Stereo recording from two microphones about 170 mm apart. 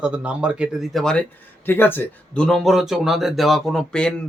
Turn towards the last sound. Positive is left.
turn(degrees=5)  # may be behind; listen again after turning